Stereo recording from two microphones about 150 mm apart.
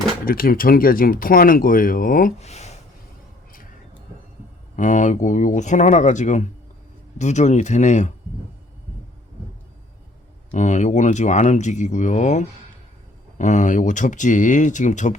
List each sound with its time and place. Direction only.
0.3 s speech: 75° left (ahead or behind)
2.4 s speech: 45° left (ahead or behind)
4.8 s speech: 55° left (ahead or behind)
10.5 s speech: 55° left (ahead or behind)